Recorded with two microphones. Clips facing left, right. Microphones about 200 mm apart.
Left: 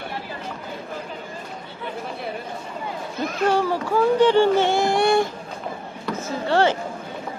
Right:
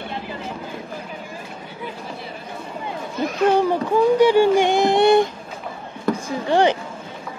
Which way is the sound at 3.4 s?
20° right (ahead or behind).